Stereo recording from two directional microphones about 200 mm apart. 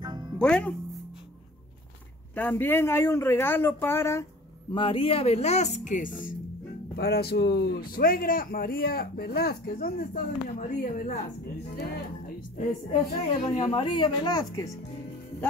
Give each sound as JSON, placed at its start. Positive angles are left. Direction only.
{"t": 0.0, "sound": "music", "side_deg": -20}
{"t": 0.4, "sound": "speech", "side_deg": 5}
{"t": 2.3, "sound": "speech", "side_deg": 10}
{"t": 4.7, "sound": "speech", "side_deg": 25}
{"t": 7.0, "sound": "a man's voice", "side_deg": 50}
{"t": 11.7, "sound": "a man's voice", "side_deg": 50}
{"t": 13.4, "sound": "a woman's voice", "side_deg": 30}